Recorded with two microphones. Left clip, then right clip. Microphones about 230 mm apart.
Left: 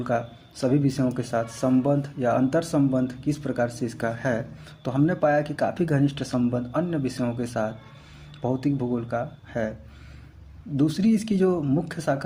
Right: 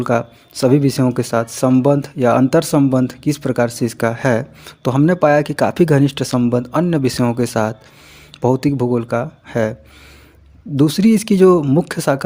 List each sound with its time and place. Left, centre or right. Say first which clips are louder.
0.0 s speech: right 9 dB; right
10.8 s speech: right 9 dB; right